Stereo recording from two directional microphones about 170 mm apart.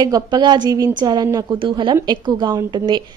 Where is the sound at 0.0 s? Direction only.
25° right (ahead or behind).